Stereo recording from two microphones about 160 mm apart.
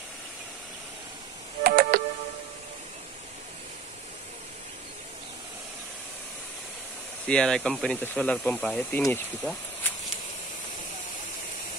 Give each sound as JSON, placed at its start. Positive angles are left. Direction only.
{"t": 1.6, "sound": "music", "side_deg": -70}
{"t": 7.2, "sound": "speech", "side_deg": 5}